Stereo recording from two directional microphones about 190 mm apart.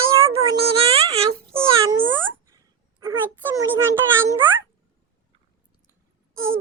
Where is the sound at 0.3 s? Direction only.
30° right (ahead or behind).